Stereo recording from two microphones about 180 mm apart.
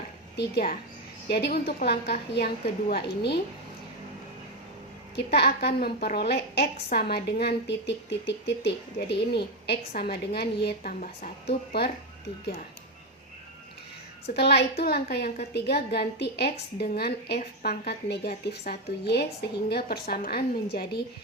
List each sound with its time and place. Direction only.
0.3 s a woman's voice: 60° left (ahead or behind)
5.1 s a woman's voice: 65° left (ahead or behind)
14.3 s a woman's voice: 65° left (ahead or behind)